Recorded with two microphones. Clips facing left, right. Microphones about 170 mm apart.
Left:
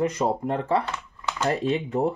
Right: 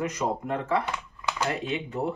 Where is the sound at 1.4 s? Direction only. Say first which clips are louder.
Left 8 dB; 40° left (ahead or behind).